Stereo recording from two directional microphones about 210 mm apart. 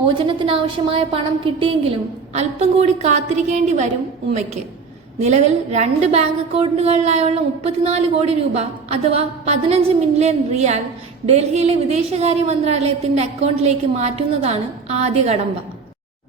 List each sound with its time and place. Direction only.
0.1 s a woman's voice: 25° right (ahead or behind)
5.2 s a woman's voice: 35° right (ahead or behind)